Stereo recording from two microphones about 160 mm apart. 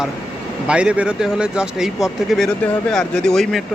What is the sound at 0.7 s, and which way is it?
Speech, 5° right (ahead or behind).